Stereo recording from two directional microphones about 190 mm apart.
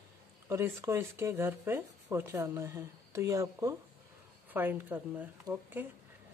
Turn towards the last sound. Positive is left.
turn(degrees=-10)  # may be behind; listen again after turning